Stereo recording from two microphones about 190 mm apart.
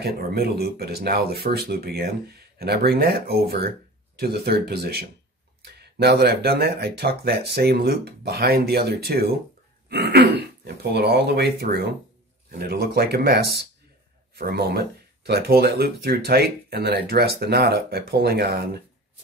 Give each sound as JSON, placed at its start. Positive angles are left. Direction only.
{"t": 0.0, "sound": "speech", "side_deg": -55}